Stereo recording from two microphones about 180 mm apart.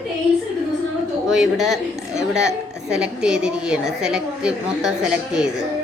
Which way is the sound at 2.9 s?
5° right (ahead or behind).